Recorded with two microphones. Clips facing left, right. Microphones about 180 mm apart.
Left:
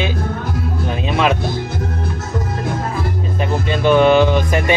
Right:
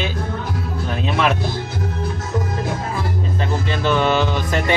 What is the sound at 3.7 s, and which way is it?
Speech, 15° left (ahead or behind).